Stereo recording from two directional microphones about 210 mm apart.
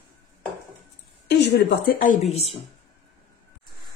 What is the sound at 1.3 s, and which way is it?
Speech, 55° left (ahead or behind).